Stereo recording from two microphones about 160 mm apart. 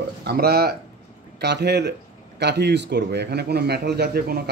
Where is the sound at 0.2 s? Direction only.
85° right.